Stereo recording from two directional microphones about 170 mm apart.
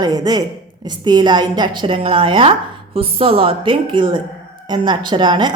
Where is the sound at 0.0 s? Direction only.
20° right (ahead or behind).